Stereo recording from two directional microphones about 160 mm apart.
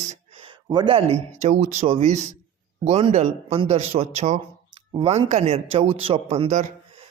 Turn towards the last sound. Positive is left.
turn(degrees=-40)  # may be behind; listen again after turning